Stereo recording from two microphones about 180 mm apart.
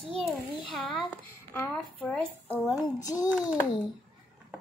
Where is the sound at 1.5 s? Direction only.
10° left (ahead or behind).